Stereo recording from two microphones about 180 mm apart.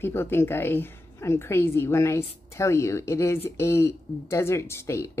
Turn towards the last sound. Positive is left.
turn(degrees=15)  # may be behind; listen again after turning